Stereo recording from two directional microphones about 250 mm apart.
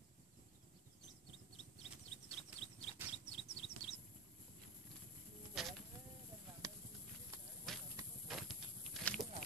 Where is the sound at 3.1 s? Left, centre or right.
Left.